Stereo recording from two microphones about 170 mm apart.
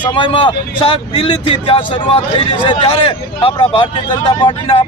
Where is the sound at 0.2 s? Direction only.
30° left (ahead or behind).